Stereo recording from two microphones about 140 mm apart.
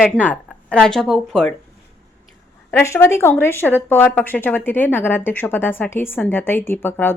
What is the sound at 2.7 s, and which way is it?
A woman's voice, 20° left (ahead or behind).